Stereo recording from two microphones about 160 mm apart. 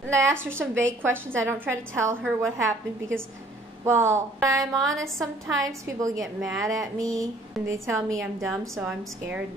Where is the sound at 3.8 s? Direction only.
15° right (ahead or behind).